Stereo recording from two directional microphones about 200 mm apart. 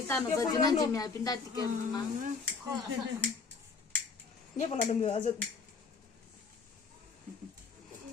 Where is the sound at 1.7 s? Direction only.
40° right (ahead or behind).